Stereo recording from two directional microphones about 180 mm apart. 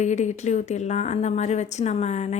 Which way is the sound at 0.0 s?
40° left (ahead or behind).